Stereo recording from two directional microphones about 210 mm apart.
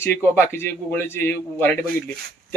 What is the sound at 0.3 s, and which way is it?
Speech, 10° left (ahead or behind).